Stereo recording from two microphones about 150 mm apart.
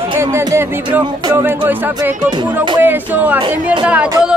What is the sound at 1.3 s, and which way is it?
Speech, 15° right (ahead or behind).